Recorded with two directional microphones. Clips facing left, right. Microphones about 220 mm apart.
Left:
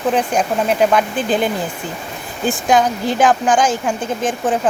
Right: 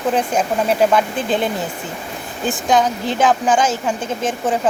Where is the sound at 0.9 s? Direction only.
5° left (ahead or behind).